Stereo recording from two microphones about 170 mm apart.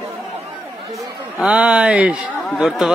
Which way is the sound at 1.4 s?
5° right (ahead or behind).